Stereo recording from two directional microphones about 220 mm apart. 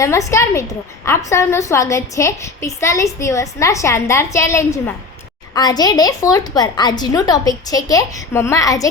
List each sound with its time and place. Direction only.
0.0 s a woman's voice: 15° left (ahead or behind)